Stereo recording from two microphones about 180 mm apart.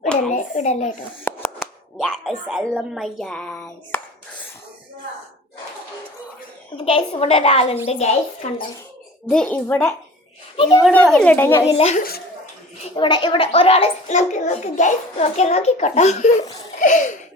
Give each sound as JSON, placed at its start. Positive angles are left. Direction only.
{"t": 0.3, "sound": "a child's voice", "side_deg": 40}
{"t": 1.2, "sound": "a sound", "side_deg": 10}
{"t": 2.0, "sound": "speech", "side_deg": 0}
{"t": 6.8, "sound": "a child's voice", "side_deg": 35}
{"t": 9.3, "sound": "a child's voice", "side_deg": 5}
{"t": 10.6, "sound": "a child's voice", "side_deg": 25}
{"t": 10.9, "sound": "a child's voice", "side_deg": 5}
{"t": 11.7, "sound": "a child's voice", "side_deg": 35}
{"t": 16.8, "sound": "laughter", "side_deg": 45}